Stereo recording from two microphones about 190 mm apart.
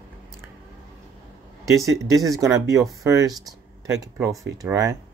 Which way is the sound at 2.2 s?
20° right (ahead or behind).